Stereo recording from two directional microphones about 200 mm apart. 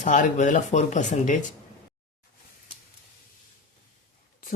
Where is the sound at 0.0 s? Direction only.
40° left (ahead or behind).